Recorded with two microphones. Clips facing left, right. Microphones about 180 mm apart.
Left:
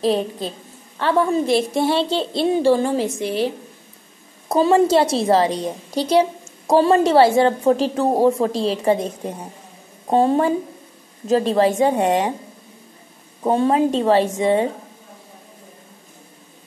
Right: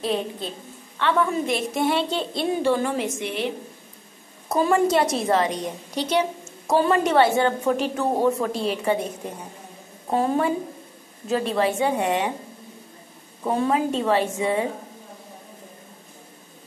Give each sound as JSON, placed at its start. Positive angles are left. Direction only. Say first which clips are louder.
{"t": 0.0, "sound": "a woman's voice", "louder": "left 6 dB", "side_deg": 35}
{"t": 13.4, "sound": "a woman's voice", "louder": "left 5 dB", "side_deg": 30}